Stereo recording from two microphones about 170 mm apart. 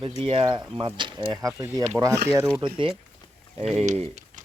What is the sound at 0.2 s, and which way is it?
Speech, 30° right (ahead or behind).